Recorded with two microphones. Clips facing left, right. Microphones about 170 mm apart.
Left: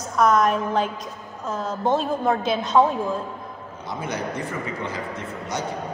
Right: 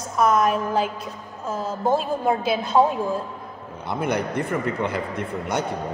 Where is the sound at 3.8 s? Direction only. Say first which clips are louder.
Right 4 dB; 60° right (ahead or behind).